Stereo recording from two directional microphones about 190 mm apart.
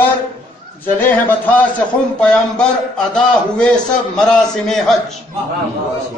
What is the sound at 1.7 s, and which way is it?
A man's voice, 5° left (ahead or behind).